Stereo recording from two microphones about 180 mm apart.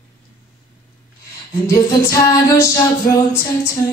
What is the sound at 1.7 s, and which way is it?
Female singing, 20° left (ahead or behind).